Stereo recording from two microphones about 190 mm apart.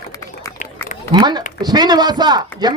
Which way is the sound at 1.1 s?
25° right (ahead or behind).